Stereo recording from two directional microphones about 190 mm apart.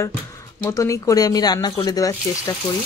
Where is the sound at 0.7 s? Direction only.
15° left (ahead or behind).